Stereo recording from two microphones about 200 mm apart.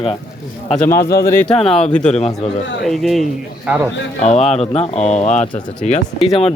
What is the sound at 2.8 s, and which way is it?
Speech, centre (ahead or behind).